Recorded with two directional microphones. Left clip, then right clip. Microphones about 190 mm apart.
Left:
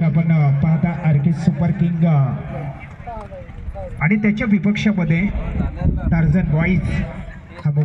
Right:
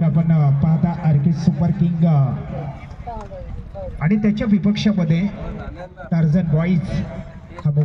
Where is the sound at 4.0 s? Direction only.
35° right (ahead or behind).